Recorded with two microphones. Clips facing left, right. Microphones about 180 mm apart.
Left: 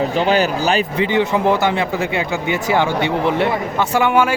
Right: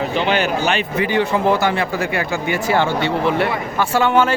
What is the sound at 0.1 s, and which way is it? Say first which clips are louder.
Speech: left 2 dB; 40° left (ahead or behind).